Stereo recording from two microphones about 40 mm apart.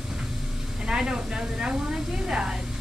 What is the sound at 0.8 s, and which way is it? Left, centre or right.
A woman's voice, centre.